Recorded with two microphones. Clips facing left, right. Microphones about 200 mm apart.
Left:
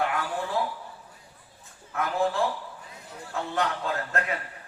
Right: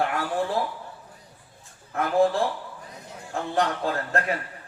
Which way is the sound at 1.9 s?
35° right (ahead or behind).